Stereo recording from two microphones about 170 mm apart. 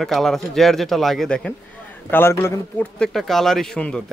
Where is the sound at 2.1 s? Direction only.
15° left (ahead or behind).